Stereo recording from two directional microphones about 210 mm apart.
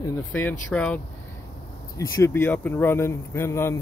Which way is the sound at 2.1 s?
15° left (ahead or behind).